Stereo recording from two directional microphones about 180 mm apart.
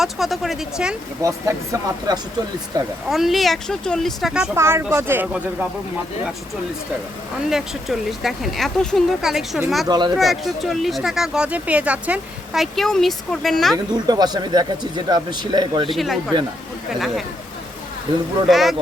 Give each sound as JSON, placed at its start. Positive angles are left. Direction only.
{"t": 0.0, "sound": "speech", "side_deg": 0}
{"t": 1.2, "sound": "a man's voice", "side_deg": -20}
{"t": 3.1, "sound": "speech", "side_deg": 0}
{"t": 4.5, "sound": "speech", "side_deg": -15}
{"t": 7.5, "sound": "speech", "side_deg": 0}
{"t": 14.1, "sound": "a man's voice", "side_deg": -20}
{"t": 15.9, "sound": "speech", "side_deg": 0}
{"t": 18.4, "sound": "speech", "side_deg": 0}